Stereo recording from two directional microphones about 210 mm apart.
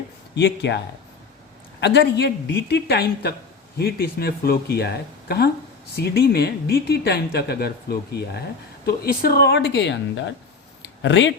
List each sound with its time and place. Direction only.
0.3 s speech: 55° left (ahead or behind)
1.8 s speech: 55° left (ahead or behind)
10.8 s a sound: 60° left (ahead or behind)